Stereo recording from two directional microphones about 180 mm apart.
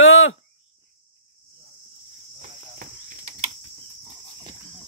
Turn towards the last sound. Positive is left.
turn(degrees=-50)  # may be behind; listen again after turning